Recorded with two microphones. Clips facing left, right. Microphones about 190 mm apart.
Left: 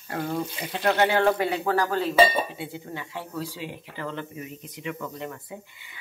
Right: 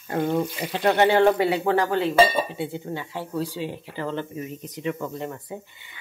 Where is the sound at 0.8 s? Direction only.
15° right (ahead or behind).